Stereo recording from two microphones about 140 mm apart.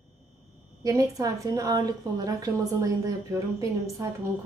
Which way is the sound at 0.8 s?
25° right (ahead or behind).